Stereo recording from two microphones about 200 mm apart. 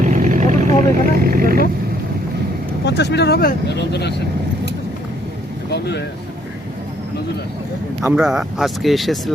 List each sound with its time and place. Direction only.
0.0 s vehicle: 40° right (ahead or behind)
2.8 s speech: 55° left (ahead or behind)
5.7 s speech: 55° left (ahead or behind)
8.0 s speech: 5° right (ahead or behind)